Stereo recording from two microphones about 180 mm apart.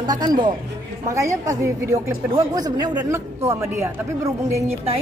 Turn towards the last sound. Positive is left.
turn(degrees=-15)  # may be behind; listen again after turning